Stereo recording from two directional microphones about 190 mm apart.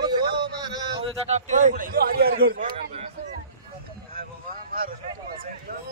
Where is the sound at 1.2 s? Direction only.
35° right (ahead or behind).